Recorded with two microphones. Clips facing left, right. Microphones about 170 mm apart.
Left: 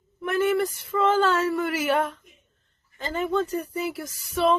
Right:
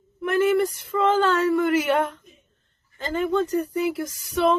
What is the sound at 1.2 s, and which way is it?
Speech, centre (ahead or behind).